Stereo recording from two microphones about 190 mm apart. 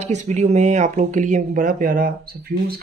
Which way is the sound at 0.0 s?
35° right (ahead or behind).